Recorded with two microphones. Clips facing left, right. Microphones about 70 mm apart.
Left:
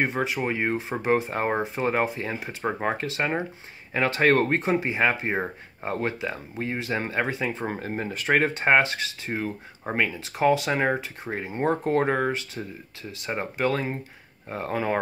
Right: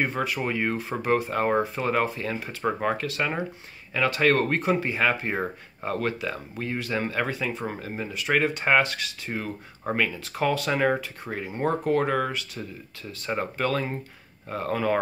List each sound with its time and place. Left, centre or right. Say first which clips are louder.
0.0 s speech: left 1 dB; left
7.8 s speech: left 2 dB; left